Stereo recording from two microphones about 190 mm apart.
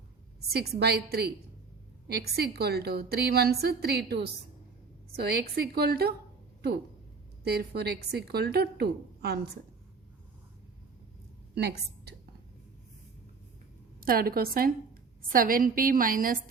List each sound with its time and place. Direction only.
0.4 s a woman's voice: 55° right (ahead or behind)
7.4 s a woman's voice: 55° right (ahead or behind)
11.5 s a woman's voice: 60° right (ahead or behind)
14.0 s a woman's voice: 50° right (ahead or behind)